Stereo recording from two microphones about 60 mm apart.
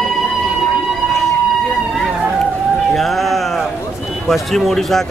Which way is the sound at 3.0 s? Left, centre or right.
Centre.